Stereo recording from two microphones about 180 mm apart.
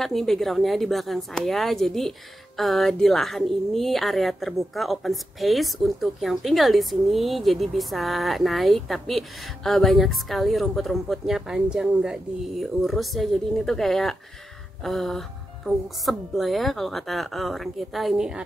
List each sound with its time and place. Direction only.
0.0 s a woman's voice: centre (ahead or behind)